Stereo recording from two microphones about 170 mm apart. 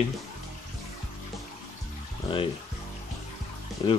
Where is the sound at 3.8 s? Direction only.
25° left (ahead or behind).